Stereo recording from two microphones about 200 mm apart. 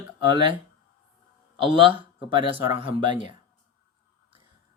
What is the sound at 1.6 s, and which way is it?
Speech, 25° right (ahead or behind).